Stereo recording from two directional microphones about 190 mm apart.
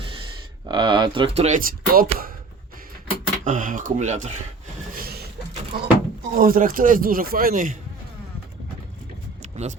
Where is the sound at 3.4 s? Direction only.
45° right (ahead or behind).